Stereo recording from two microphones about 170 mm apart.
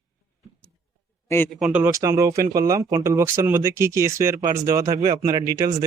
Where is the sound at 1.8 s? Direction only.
20° right (ahead or behind).